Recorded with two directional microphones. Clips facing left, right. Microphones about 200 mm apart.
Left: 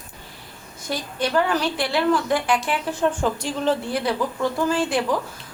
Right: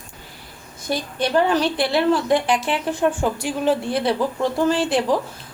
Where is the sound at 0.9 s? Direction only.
25° right (ahead or behind).